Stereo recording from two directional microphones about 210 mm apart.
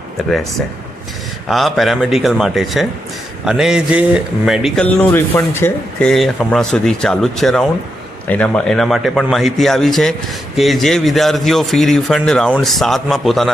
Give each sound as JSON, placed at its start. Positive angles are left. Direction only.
{"t": 0.2, "sound": "a man's voice", "side_deg": 0}
{"t": 1.5, "sound": "a man's voice", "side_deg": 0}